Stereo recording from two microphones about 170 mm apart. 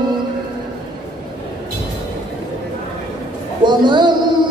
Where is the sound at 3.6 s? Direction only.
25° right (ahead or behind).